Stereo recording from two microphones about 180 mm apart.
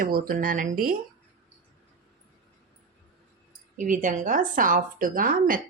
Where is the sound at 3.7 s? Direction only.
45° right (ahead or behind).